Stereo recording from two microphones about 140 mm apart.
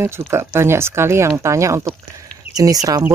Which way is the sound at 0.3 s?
20° right (ahead or behind).